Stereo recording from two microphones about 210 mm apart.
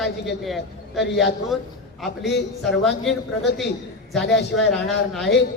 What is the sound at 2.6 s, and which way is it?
Speech, centre (ahead or behind).